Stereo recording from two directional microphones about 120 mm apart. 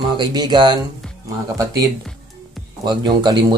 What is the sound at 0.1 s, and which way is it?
Speech, 35° right (ahead or behind).